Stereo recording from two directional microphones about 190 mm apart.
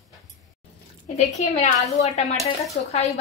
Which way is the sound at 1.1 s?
35° left (ahead or behind).